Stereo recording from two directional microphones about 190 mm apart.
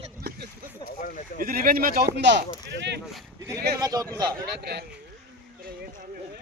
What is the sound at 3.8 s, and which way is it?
Speech, 20° right (ahead or behind).